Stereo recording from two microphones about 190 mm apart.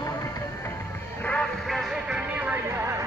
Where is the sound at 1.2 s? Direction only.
5° left (ahead or behind).